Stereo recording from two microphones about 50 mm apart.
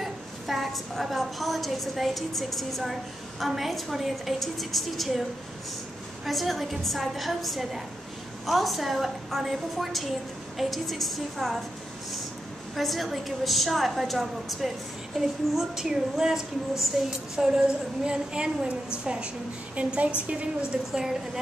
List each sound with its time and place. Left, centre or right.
0.0 s a woman's voice: centre
6.2 s a woman's voice: centre
12.7 s a woman's voice: centre; by 20.8 s right
20.9 s a woman's voice: centre